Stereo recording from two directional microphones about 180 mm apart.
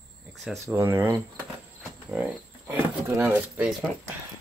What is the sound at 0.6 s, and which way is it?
Speech, 15° right (ahead or behind).